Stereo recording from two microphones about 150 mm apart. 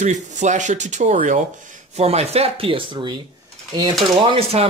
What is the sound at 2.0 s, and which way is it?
Speech, 45° right (ahead or behind).